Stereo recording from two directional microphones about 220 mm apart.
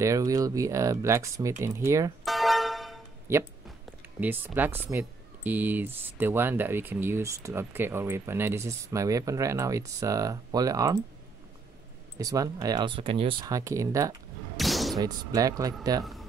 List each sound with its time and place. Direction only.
0.0 s speech: 15° right (ahead or behind)
2.2 s music: centre (ahead or behind)
3.3 s speech: 10° right (ahead or behind)
12.2 s speech: 15° right (ahead or behind)
14.6 s a sound: centre (ahead or behind)
15.0 s speech: 15° right (ahead or behind)
16.0 s speech: centre (ahead or behind)